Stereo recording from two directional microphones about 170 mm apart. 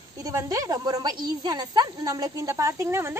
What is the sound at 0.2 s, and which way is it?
A woman's voice, 20° right (ahead or behind).